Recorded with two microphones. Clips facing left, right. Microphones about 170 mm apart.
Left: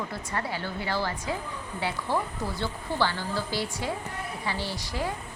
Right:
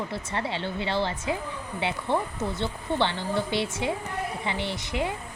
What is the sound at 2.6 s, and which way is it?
A woman's voice, 20° right (ahead or behind).